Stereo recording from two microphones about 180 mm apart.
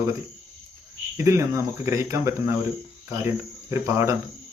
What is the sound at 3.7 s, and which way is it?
Speech, 15° right (ahead or behind).